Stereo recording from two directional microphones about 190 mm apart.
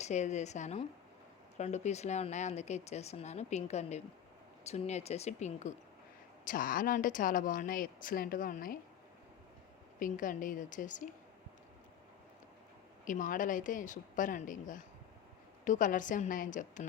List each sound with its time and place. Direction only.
0.0 s speech: 40° left (ahead or behind)
10.0 s speech: 45° left (ahead or behind)
13.1 s speech: 45° left (ahead or behind)